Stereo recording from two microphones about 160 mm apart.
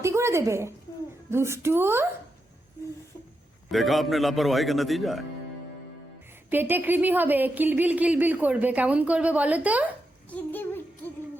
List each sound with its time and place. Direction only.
0.0 s a sound: 15° right (ahead or behind)
1.3 s speech: 15° right (ahead or behind)
3.7 s a man's voice: centre (ahead or behind)
6.5 s speech: 10° right (ahead or behind)
10.2 s a child's voice: 10° left (ahead or behind)